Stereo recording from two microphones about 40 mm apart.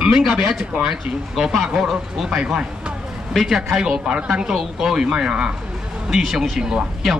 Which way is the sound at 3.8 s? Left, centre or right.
Centre.